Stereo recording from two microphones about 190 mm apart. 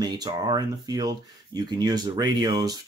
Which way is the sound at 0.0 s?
20° right (ahead or behind).